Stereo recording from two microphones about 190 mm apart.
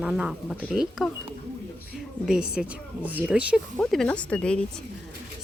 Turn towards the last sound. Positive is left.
turn(degrees=5)  # may be behind; listen again after turning